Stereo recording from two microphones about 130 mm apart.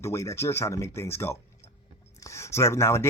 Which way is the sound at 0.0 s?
20° left (ahead or behind).